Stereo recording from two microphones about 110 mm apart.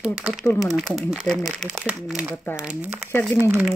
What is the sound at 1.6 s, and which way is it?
Speech, 10° right (ahead or behind).